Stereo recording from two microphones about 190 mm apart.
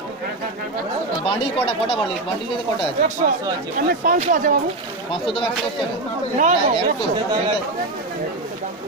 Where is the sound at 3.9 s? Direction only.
45° right (ahead or behind).